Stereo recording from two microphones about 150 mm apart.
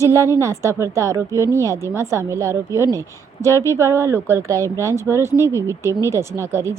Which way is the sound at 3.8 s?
20° right (ahead or behind).